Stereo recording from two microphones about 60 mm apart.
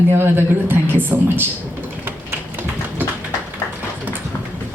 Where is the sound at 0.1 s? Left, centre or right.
Right.